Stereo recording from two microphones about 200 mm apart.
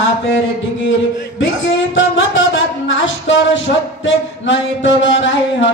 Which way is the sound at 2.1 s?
70° left (ahead or behind).